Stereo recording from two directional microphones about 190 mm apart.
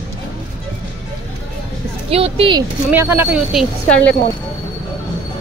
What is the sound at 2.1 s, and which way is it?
Speech, 30° right (ahead or behind).